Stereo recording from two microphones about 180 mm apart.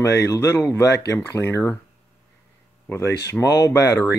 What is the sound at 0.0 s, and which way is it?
Speech, 15° left (ahead or behind).